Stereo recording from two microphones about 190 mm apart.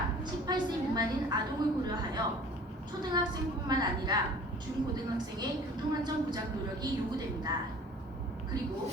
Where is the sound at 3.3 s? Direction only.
20° right (ahead or behind).